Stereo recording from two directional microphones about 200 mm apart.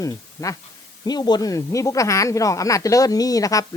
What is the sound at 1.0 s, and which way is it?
A man's voice, 20° left (ahead or behind).